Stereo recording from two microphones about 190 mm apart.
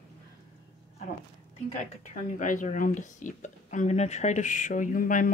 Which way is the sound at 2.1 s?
40° left (ahead or behind).